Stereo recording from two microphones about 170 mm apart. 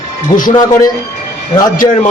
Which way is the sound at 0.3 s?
55° left (ahead or behind).